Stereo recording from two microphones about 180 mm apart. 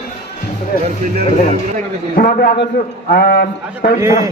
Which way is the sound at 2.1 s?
55° left (ahead or behind).